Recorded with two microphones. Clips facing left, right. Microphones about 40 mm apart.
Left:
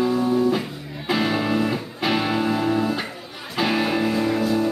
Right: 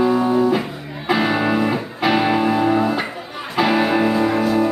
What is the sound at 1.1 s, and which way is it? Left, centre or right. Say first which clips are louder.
Music: right 4 dB; centre.